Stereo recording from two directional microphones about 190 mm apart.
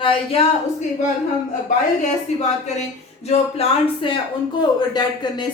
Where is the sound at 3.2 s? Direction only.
35° left (ahead or behind).